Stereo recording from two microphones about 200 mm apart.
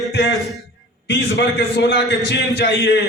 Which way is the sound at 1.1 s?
55° left (ahead or behind).